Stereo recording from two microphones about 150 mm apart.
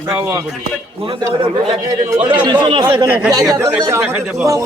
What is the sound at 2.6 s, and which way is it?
Speech, 35° right (ahead or behind).